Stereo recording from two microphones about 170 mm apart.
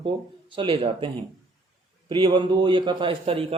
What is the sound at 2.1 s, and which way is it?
Speech, 30° right (ahead or behind).